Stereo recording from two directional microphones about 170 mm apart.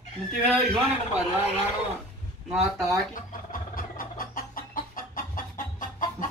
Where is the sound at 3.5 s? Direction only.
55° left (ahead or behind).